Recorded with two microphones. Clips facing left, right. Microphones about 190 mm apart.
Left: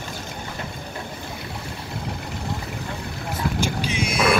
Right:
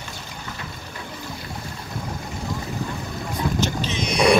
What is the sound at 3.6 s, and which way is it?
Boat, 10° left (ahead or behind).